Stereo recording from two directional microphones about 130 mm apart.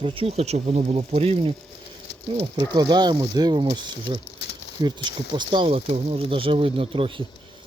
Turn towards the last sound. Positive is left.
turn(degrees=-40)  # may be behind; listen again after turning